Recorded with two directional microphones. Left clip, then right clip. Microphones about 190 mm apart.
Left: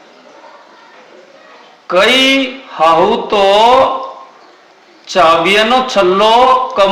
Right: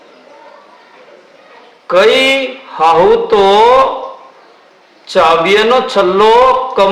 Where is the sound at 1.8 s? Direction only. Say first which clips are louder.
Right 1 dB; 15° right (ahead or behind).